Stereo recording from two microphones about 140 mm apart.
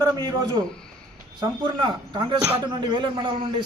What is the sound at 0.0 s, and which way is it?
A man's voice, 25° right (ahead or behind).